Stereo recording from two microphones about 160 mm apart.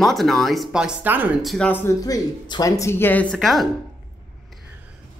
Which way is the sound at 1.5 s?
5° left (ahead or behind).